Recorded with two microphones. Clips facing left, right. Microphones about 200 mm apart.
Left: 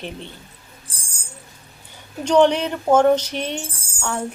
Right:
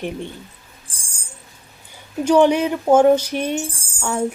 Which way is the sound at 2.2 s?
10° right (ahead or behind).